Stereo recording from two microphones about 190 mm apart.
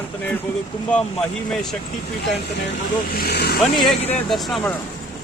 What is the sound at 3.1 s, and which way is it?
Speech, 55° left (ahead or behind).